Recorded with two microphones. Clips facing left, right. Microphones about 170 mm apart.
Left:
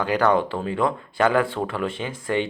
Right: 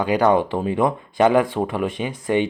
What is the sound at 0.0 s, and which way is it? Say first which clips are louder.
Speech: right 3 dB; 15° right (ahead or behind).